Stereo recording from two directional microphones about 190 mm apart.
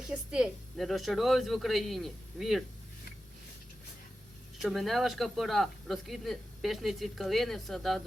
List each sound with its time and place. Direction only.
0.1 s speech: 5° right (ahead or behind)
4.6 s speech: centre (ahead or behind)